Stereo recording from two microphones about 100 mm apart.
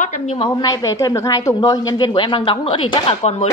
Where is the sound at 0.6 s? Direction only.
35° left (ahead or behind); by 2.6 s 55° left (ahead or behind).